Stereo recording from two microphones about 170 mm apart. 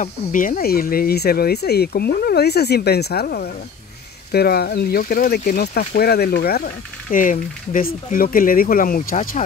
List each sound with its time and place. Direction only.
0.0 s speech: 50° left (ahead or behind)